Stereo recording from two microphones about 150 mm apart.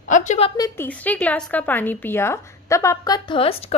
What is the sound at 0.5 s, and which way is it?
A woman's voice, 20° left (ahead or behind).